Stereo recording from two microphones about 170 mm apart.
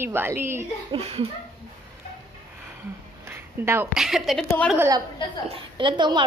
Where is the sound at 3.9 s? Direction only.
5° right (ahead or behind).